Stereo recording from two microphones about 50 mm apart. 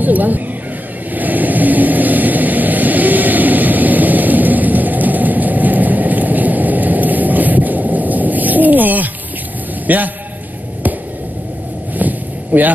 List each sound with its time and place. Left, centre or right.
0.0 s speech: right
1.1 s vehicle: right
9.8 s a man's voice: right
12.0 s a sound: right